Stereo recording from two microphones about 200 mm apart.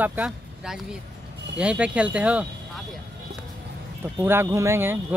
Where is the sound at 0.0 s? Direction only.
5° right (ahead or behind).